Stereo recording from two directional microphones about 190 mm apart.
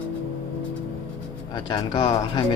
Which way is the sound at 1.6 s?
20° left (ahead or behind).